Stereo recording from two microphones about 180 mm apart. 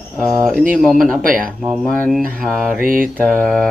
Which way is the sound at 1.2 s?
50° right (ahead or behind).